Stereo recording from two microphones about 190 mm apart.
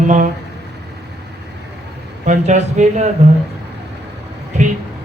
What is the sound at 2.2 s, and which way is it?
Speech, 40° right (ahead or behind).